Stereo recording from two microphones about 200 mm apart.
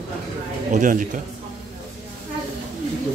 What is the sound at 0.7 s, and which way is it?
Speech, 40° right (ahead or behind).